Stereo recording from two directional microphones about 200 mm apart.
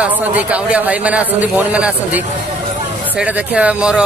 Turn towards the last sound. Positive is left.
turn(degrees=-5)  # may be behind; listen again after turning